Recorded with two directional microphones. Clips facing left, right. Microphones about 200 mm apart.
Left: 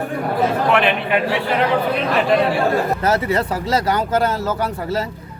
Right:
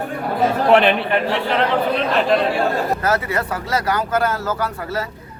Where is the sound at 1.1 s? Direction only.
10° left (ahead or behind).